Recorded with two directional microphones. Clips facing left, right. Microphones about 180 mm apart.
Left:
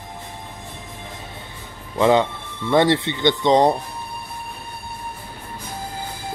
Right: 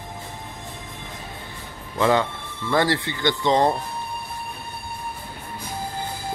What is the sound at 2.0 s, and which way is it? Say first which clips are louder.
Speech: left 4 dB; 20° left (ahead or behind).